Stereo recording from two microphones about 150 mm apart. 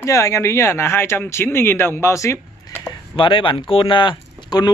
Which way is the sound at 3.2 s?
35° left (ahead or behind).